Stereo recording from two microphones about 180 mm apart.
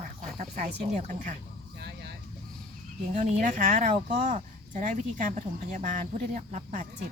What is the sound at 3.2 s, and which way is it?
Speech, 40° right (ahead or behind).